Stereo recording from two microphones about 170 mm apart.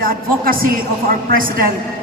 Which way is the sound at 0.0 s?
55° right (ahead or behind).